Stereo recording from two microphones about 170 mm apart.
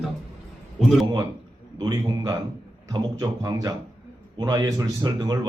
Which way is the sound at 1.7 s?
25° right (ahead or behind).